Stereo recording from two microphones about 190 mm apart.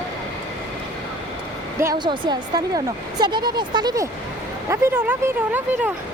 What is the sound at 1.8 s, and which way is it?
Speech, 20° right (ahead or behind).